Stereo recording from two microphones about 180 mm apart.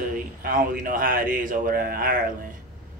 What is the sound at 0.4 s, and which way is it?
Speech, 50° right (ahead or behind).